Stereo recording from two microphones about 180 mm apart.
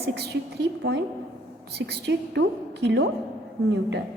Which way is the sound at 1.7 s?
65° right (ahead or behind).